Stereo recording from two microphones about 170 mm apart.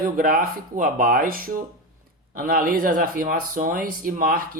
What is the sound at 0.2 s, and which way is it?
Speech, 55° right (ahead or behind).